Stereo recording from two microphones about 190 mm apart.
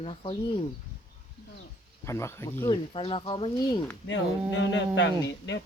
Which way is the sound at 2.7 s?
30° left (ahead or behind).